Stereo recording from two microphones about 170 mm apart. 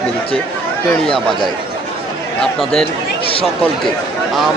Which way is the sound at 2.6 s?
5° left (ahead or behind).